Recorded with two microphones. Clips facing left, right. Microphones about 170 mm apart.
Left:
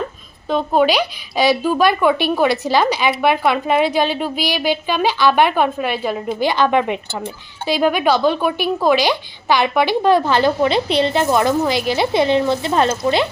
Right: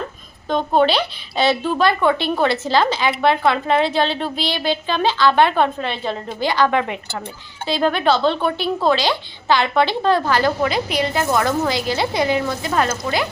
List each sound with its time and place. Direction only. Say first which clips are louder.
0.4 s a woman's voice: left 1 dB; 5° left (ahead or behind); by 13.2 s 25° left (ahead or behind)